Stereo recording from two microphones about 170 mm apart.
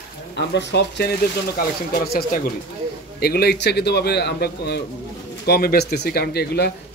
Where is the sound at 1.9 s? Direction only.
65° left (ahead or behind).